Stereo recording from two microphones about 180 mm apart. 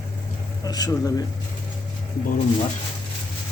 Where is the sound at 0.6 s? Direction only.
20° left (ahead or behind).